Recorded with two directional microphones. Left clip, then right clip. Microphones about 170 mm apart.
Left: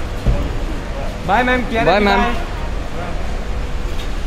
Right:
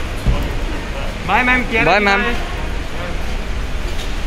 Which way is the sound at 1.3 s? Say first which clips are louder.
Right 1 dB; 85° left.